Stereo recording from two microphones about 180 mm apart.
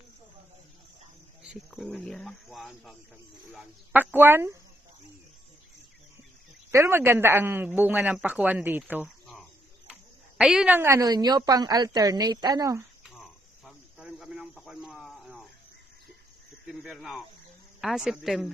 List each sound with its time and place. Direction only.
1.4 s speech: 5° right (ahead or behind)
6.7 s speech: 15° right (ahead or behind)
9.8 s a woman's voice: 5° right (ahead or behind)
13.0 s cricket: centre (ahead or behind)
16.6 s speech: centre (ahead or behind)